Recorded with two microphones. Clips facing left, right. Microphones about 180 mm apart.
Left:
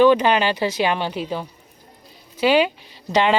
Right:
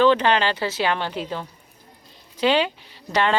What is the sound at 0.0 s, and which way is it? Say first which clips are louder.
Speech: left 3 dB; 10° left (ahead or behind).